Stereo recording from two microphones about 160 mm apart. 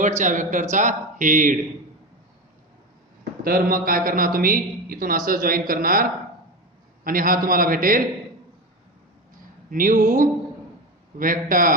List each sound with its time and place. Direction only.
0.2 s speech: 50° right (ahead or behind)
3.4 s a man's voice: 65° right (ahead or behind)
9.6 s a man's voice: 60° right (ahead or behind)